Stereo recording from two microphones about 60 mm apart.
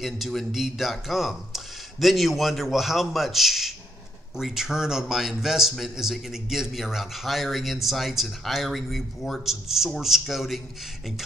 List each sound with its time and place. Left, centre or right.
0.0 s a man's voice: centre